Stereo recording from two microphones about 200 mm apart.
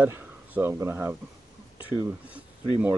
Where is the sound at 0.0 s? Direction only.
10° right (ahead or behind).